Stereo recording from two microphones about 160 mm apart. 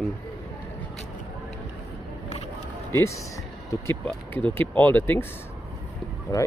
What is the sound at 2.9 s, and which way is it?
Speech, 15° left (ahead or behind).